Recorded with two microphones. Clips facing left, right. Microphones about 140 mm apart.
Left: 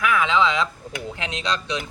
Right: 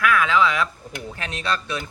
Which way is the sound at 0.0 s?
20° left (ahead or behind).